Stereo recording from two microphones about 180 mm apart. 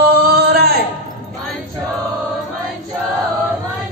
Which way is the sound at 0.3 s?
60° right (ahead or behind).